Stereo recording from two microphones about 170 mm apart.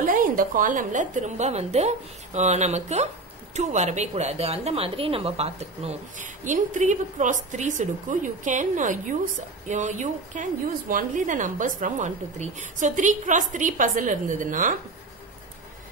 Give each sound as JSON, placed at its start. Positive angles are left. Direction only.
{"t": 0.0, "sound": "a woman's voice", "side_deg": -55}